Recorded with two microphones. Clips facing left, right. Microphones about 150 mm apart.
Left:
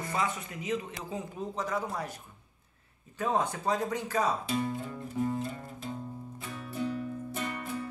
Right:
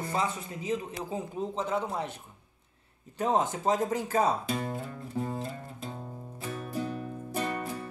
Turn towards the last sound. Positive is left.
turn(degrees=-35)  # may be behind; listen again after turning